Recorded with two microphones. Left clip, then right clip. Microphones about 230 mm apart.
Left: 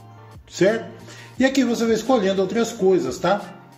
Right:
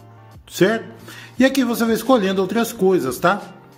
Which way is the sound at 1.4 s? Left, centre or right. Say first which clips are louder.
Right 2 dB; right.